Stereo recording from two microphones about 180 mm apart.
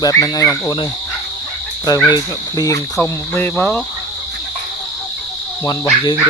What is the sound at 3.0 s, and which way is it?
Speech, 10° left (ahead or behind).